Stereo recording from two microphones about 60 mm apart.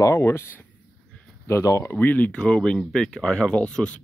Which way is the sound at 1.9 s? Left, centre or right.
Left.